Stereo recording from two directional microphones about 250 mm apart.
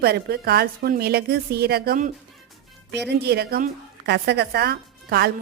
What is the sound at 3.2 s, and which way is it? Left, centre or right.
A woman's voice, right.